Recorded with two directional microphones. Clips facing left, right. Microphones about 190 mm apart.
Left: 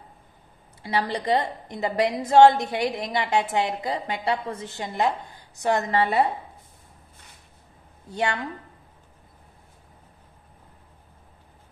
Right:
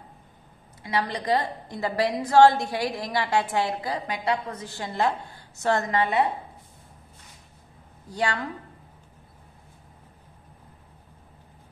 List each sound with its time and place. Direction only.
0.8 s a woman's voice: 30° left (ahead or behind)
5.9 s a woman's voice: 30° left (ahead or behind)
8.1 s a woman's voice: 20° left (ahead or behind)